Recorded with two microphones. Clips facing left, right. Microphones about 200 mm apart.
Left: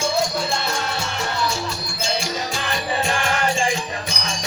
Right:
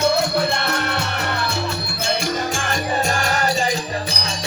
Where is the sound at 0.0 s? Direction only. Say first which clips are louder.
Right 4 dB; 65° right (ahead or behind).